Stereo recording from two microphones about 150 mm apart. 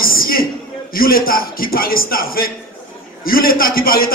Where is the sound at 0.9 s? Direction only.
75° left (ahead or behind).